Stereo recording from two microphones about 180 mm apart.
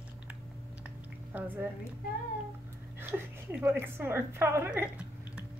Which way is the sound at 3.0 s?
10° right (ahead or behind).